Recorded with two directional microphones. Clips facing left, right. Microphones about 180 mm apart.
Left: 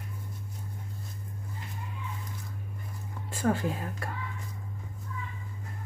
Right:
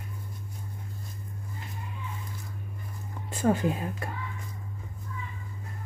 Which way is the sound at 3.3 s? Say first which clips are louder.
Right 3 dB; 20° right (ahead or behind).